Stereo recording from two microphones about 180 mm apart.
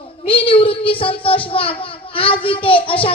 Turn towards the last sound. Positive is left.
turn(degrees=30)  # may be behind; listen again after turning